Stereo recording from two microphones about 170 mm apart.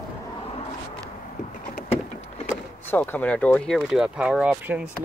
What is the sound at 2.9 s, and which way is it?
Speech, 10° left (ahead or behind).